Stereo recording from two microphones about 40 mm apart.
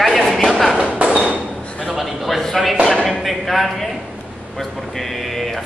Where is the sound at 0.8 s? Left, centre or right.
Right.